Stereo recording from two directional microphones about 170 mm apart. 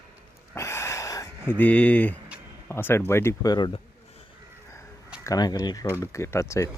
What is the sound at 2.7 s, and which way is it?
Speech, 15° left (ahead or behind).